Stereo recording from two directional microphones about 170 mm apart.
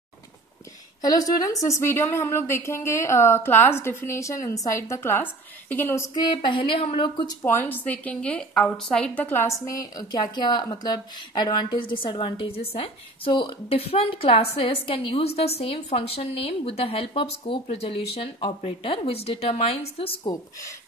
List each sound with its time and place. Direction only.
1.0 s a woman's voice: 20° left (ahead or behind)
6.3 s a woman's voice: 30° left (ahead or behind)
7.4 s a woman's voice: 10° left (ahead or behind); by 20.3 s 35° left (ahead or behind)